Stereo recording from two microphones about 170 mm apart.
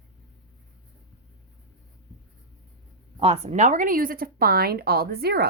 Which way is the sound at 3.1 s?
35° right (ahead or behind).